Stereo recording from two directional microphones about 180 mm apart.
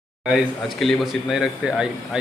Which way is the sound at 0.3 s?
Centre (ahead or behind).